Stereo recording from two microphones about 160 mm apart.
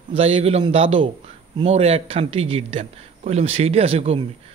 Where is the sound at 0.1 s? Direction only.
40° right (ahead or behind).